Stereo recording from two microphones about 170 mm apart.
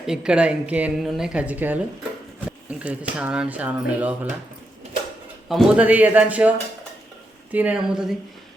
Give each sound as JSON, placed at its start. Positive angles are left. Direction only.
{"t": 0.0, "sound": "a woman's voice", "side_deg": -5}
{"t": 5.5, "sound": "a woman's voice", "side_deg": -5}
{"t": 7.5, "sound": "a woman's voice", "side_deg": -10}